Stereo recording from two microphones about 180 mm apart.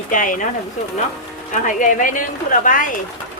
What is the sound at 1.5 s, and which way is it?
Speech, 45° left (ahead or behind).